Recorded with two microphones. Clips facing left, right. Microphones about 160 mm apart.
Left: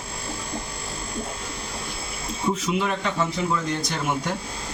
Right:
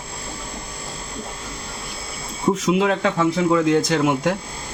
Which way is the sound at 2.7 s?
75° right (ahead or behind).